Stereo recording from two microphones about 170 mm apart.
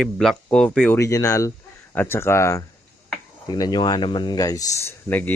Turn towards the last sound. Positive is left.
turn(degrees=10)  # may be behind; listen again after turning